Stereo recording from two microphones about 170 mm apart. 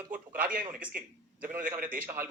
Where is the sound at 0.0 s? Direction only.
55° right (ahead or behind).